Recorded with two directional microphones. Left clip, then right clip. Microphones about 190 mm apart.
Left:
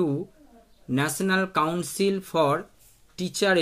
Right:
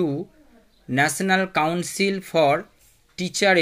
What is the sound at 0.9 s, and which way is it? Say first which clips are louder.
Speech: right 5 dB; 20° right (ahead or behind).